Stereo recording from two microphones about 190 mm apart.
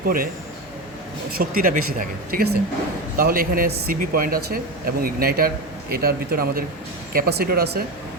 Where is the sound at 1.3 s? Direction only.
50° right (ahead or behind).